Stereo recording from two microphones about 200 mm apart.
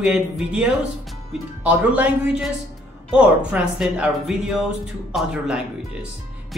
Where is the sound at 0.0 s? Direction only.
5° right (ahead or behind).